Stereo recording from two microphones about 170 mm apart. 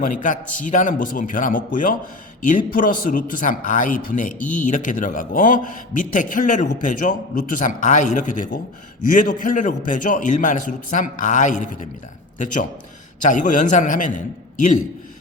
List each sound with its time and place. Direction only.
0.0 s a man's voice: 50° left (ahead or behind)
13.2 s a man's voice: 50° left (ahead or behind)